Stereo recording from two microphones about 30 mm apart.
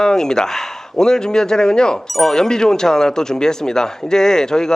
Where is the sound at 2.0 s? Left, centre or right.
Centre.